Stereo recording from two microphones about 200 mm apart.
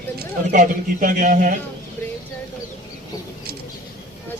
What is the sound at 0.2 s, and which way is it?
A man's voice, 40° right (ahead or behind).